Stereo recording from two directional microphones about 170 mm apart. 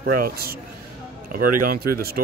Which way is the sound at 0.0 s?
65° right (ahead or behind).